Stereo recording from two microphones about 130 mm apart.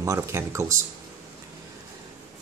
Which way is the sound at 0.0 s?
25° right (ahead or behind).